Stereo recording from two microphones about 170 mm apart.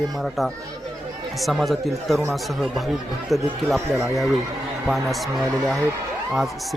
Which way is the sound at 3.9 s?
15° right (ahead or behind).